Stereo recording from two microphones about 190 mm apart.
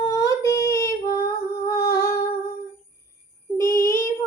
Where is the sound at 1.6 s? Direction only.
15° left (ahead or behind).